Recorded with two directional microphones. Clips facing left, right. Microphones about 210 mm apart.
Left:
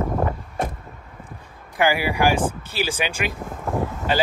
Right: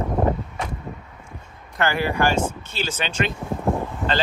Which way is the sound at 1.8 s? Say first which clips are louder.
Left 2 dB; 10° left (ahead or behind).